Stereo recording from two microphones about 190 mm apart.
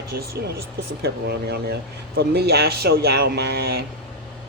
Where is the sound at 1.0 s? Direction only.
60° right (ahead or behind).